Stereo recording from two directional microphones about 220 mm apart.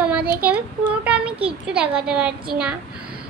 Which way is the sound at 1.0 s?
5° right (ahead or behind).